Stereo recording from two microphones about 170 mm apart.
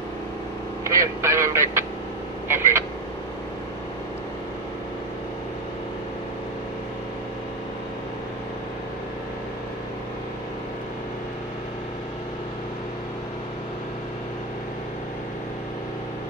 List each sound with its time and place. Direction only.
0.8 s speech: 15° right (ahead or behind)